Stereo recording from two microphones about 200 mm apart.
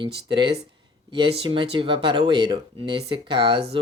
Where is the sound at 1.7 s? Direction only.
25° right (ahead or behind).